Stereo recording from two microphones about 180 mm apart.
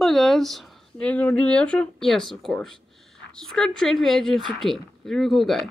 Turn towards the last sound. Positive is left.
turn(degrees=0)  # may be behind; listen again after turning